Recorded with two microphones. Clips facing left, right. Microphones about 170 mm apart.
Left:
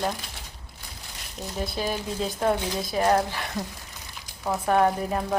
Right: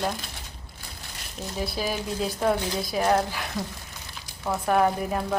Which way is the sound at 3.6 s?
15° left (ahead or behind).